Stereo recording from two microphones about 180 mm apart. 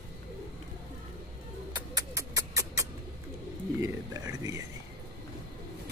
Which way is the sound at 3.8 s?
20° right (ahead or behind).